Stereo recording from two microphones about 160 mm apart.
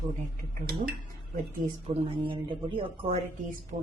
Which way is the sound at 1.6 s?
60° right (ahead or behind).